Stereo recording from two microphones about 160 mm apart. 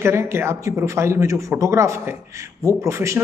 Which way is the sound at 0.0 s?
15° right (ahead or behind).